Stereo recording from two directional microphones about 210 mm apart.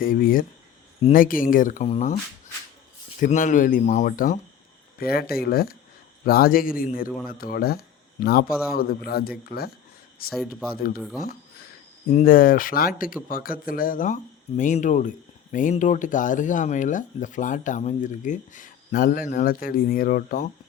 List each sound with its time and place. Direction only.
0.0 s speech: 40° left (ahead or behind)
3.2 s a man's voice: 35° left (ahead or behind)
10.2 s speech: centre (ahead or behind)
12.0 s speech: 40° left (ahead or behind)